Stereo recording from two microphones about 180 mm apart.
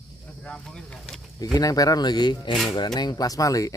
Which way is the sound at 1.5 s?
20° left (ahead or behind).